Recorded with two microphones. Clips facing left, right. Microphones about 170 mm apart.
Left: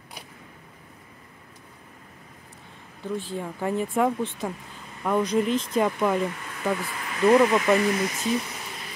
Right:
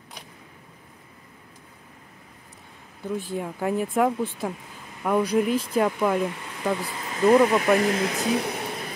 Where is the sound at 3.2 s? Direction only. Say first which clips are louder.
Right 3 dB; 15° right (ahead or behind).